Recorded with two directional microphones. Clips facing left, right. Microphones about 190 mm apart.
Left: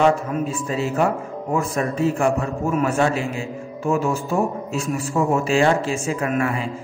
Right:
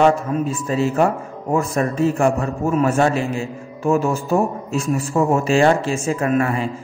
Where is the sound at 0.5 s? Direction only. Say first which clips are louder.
Right 4 dB; 40° right (ahead or behind).